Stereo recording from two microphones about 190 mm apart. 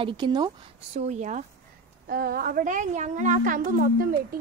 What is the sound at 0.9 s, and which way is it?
Speech, 40° right (ahead or behind).